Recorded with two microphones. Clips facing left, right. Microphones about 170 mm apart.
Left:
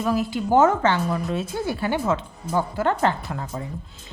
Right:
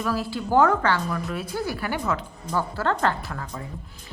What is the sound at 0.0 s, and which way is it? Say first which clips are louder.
A woman's voice: left 4 dB; 20° left (ahead or behind).